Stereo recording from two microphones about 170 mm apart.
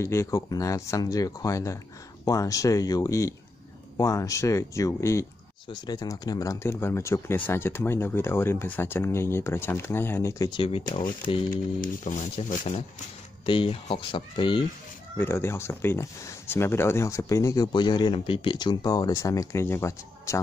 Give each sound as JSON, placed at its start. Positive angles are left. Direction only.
{"t": 0.0, "sound": "speech", "side_deg": 15}
{"t": 10.5, "sound": "speech", "side_deg": 30}
{"t": 11.5, "sound": "speech", "side_deg": 50}
{"t": 13.5, "sound": "speech", "side_deg": 30}
{"t": 15.1, "sound": "speech", "side_deg": 15}